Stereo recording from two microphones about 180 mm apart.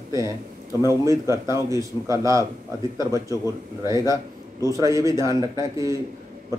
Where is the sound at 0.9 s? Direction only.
15° right (ahead or behind).